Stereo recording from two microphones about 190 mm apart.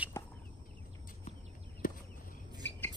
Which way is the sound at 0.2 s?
15° left (ahead or behind).